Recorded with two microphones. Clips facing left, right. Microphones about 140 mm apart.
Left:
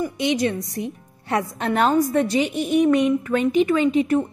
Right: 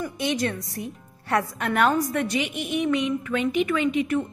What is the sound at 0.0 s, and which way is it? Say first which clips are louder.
A woman's voice: left 4 dB; 20° left (ahead or behind).